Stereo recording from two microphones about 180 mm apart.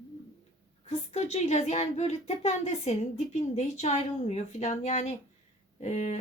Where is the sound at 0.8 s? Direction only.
35° left (ahead or behind).